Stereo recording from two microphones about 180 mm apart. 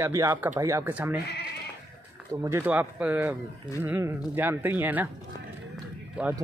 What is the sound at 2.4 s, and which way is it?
Speech, 10° right (ahead or behind).